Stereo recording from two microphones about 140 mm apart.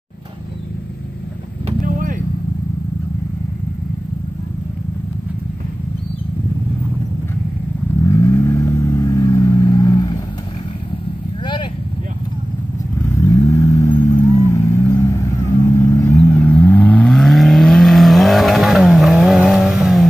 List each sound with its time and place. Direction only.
8.1 s vehicle: 20° left (ahead or behind)
13.2 s vehicle: 25° left (ahead or behind); by 20.1 s centre (ahead or behind)